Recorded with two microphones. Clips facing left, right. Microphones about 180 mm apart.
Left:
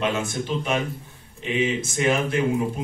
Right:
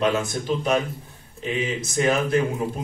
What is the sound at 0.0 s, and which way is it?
A man's voice, 40° right (ahead or behind).